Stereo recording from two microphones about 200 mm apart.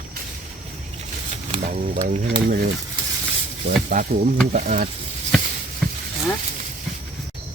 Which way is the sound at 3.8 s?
40° right (ahead or behind).